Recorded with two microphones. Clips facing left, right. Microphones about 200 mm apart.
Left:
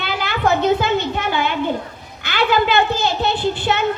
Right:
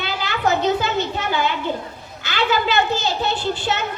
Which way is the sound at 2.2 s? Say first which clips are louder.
Left 3 dB; 55° left (ahead or behind).